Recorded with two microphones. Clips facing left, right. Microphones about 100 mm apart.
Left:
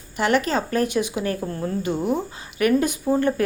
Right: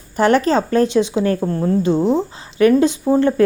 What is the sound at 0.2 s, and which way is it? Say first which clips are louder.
A woman's voice: right 6 dB; 35° right (ahead or behind).